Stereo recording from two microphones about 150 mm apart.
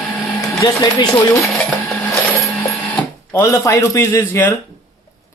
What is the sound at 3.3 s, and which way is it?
A man's voice, 20° left (ahead or behind).